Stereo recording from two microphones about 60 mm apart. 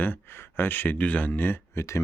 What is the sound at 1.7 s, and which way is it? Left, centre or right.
Speech, left.